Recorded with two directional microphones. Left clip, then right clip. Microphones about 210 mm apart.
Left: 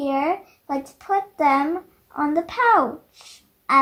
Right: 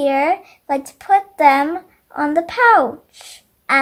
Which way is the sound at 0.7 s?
20° right (ahead or behind).